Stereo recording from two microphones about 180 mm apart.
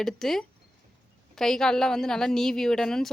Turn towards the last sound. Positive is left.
turn(degrees=5)  # may be behind; listen again after turning